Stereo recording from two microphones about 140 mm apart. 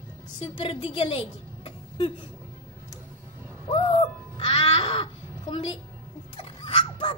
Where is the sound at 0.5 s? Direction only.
40° left (ahead or behind).